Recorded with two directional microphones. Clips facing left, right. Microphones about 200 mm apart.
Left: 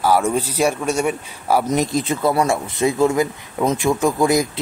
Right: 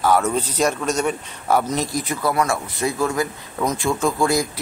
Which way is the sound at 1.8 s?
25° left (ahead or behind).